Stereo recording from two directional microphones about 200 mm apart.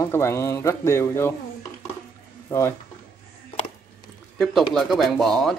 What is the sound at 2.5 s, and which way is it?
Speech, 10° left (ahead or behind).